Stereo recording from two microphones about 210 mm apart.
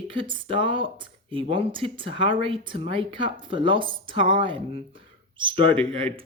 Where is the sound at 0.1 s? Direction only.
25° right (ahead or behind).